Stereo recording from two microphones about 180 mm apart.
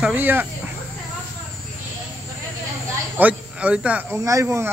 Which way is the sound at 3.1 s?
10° right (ahead or behind).